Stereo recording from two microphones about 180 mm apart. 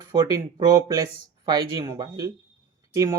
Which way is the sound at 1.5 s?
20° right (ahead or behind).